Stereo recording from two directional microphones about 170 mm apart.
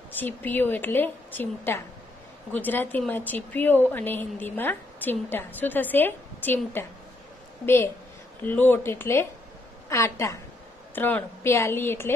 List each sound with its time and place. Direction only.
0.2 s a woman's voice: 10° left (ahead or behind)